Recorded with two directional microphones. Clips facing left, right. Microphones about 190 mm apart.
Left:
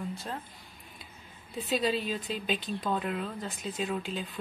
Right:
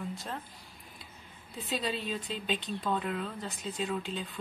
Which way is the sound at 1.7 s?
5° left (ahead or behind).